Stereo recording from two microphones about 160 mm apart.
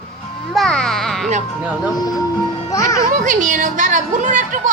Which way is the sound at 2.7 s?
20° left (ahead or behind).